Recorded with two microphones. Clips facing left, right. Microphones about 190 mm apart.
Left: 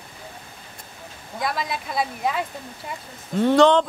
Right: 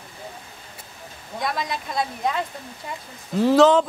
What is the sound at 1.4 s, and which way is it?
Speech, centre (ahead or behind).